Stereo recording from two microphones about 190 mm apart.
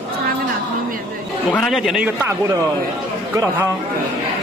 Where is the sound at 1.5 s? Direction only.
5° left (ahead or behind).